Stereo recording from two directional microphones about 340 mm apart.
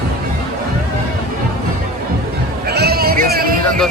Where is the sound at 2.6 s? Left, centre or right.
Right.